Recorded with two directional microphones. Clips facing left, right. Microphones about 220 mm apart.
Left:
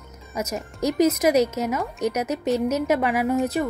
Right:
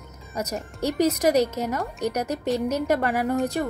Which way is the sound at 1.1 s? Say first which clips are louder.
Left 1 dB; 10° left (ahead or behind).